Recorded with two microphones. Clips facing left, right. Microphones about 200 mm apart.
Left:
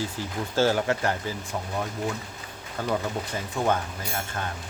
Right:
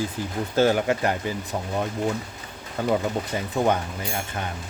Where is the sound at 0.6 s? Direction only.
15° right (ahead or behind).